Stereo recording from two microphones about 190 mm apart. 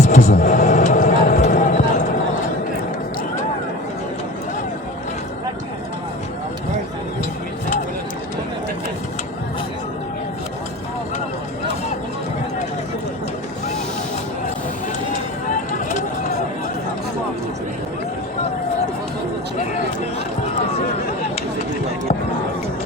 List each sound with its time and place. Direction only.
0.0 s music: 35° left (ahead or behind)